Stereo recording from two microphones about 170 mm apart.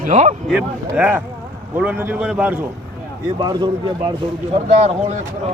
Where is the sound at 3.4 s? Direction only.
25° right (ahead or behind).